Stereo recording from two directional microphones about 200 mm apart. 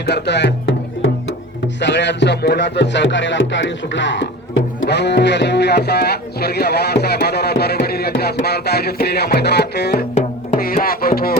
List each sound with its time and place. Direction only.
0.0 s music: 55° left (ahead or behind)
10.2 s music: 40° left (ahead or behind)